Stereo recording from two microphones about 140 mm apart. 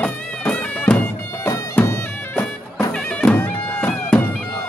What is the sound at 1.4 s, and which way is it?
Bagpipes, 20° left (ahead or behind).